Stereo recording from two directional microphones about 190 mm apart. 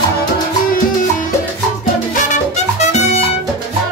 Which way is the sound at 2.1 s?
40° left (ahead or behind).